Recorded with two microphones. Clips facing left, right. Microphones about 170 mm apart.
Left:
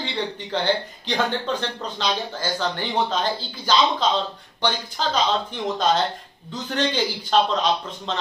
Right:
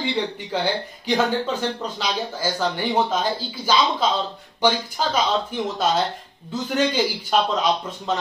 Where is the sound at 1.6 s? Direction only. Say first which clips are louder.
Right 2 dB; 10° right (ahead or behind).